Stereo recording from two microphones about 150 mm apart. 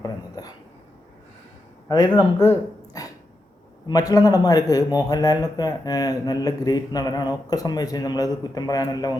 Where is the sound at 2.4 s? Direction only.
20° left (ahead or behind).